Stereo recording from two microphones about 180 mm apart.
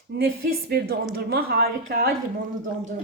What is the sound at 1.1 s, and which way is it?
Speech, 60° right (ahead or behind).